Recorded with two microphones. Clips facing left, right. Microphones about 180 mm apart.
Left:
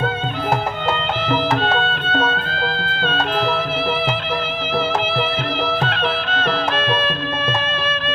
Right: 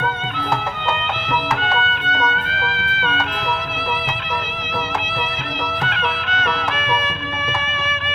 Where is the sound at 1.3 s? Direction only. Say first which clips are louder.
Left 3 dB; 30° left (ahead or behind).